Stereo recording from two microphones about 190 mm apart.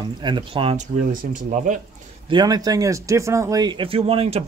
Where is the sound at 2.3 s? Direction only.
20° right (ahead or behind).